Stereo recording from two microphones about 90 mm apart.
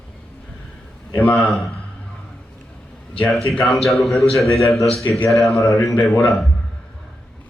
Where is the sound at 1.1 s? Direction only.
15° left (ahead or behind).